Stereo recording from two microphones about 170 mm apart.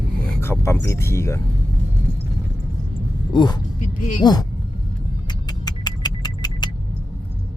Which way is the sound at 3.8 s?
45° left (ahead or behind).